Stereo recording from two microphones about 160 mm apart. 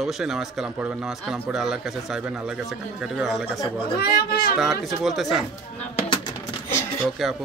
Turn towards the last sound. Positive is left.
turn(degrees=0)  # may be behind; listen again after turning